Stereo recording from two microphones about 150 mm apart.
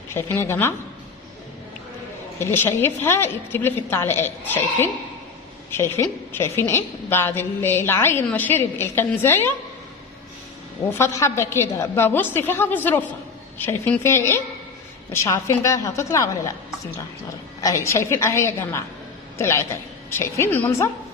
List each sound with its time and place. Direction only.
0.1 s a woman's voice: 15° left (ahead or behind)
2.4 s a woman's voice: 15° left (ahead or behind)
10.9 s a woman's voice: 20° left (ahead or behind)
17.6 s a woman's voice: 20° left (ahead or behind)